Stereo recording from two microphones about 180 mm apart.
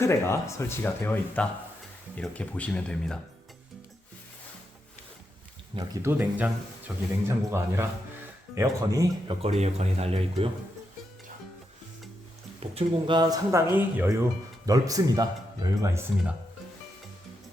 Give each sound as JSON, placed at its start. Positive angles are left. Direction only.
{"t": 0.0, "sound": "speech", "side_deg": 15}
{"t": 5.7, "sound": "speech", "side_deg": -15}
{"t": 9.4, "sound": "speech", "side_deg": -35}
{"t": 12.5, "sound": "speech", "side_deg": -30}